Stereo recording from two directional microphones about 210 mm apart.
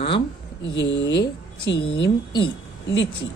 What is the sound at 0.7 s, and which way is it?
Speech, 60° left (ahead or behind).